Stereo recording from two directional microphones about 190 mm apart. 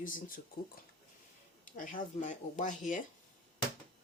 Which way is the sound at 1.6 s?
45° left (ahead or behind).